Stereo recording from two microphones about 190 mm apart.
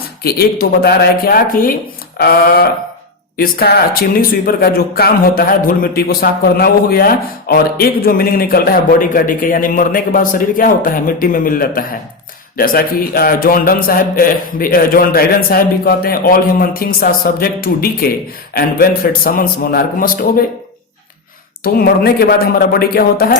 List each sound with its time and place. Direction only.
0.2 s speech: 55° left (ahead or behind)
21.6 s speech: 55° left (ahead or behind)